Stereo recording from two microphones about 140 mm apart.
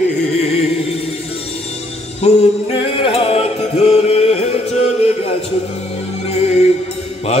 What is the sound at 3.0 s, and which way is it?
Music, 40° left (ahead or behind).